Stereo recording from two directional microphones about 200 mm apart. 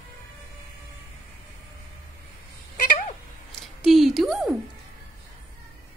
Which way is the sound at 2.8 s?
45° left (ahead or behind).